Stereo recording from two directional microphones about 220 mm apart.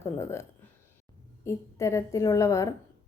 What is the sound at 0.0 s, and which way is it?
Speech, 10° left (ahead or behind).